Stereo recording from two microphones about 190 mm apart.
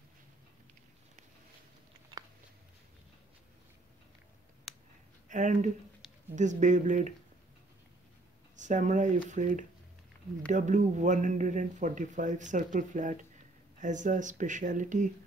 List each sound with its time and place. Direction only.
5.3 s speech: 40° right (ahead or behind)
8.5 s speech: 40° right (ahead or behind)